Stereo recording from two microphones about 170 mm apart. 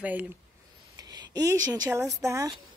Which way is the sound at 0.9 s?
20° right (ahead or behind).